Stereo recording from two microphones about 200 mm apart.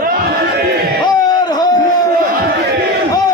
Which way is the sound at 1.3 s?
20° left (ahead or behind).